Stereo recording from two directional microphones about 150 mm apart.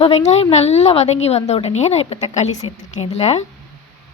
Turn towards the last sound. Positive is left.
turn(degrees=45)  # may be behind; listen again after turning